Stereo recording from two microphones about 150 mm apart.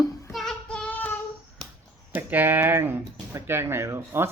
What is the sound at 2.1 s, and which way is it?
Speech, 15° right (ahead or behind).